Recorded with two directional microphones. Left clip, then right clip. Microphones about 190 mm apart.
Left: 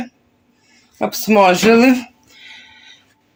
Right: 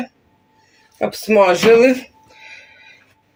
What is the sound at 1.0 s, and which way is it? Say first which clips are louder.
Speech: left 1 dB; 35° left (ahead or behind).